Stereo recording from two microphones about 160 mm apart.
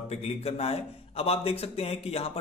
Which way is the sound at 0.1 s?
40° left (ahead or behind).